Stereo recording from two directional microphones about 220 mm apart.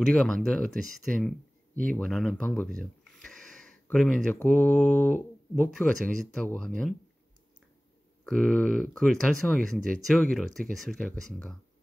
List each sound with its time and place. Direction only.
0.0 s speech: centre (ahead or behind)
8.2 s speech: 5° left (ahead or behind)